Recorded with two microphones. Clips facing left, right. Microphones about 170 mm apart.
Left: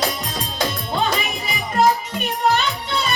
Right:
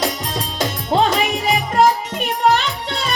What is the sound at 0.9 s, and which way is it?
Music, 90° right.